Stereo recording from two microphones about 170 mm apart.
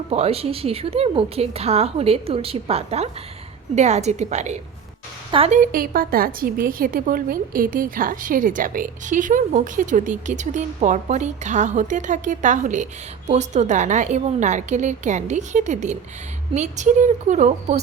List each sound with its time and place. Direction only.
0.1 s a woman's voice: 35° right (ahead or behind)
5.5 s a woman's voice: 55° right (ahead or behind)